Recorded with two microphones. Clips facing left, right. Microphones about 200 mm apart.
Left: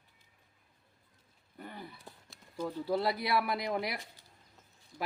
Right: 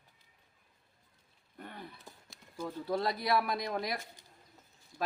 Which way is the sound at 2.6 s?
10° left (ahead or behind).